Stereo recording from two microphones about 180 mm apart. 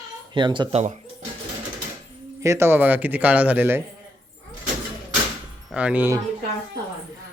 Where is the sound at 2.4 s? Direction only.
15° right (ahead or behind).